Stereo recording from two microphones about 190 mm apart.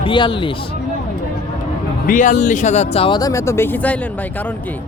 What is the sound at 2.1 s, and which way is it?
Speech, 40° left (ahead or behind).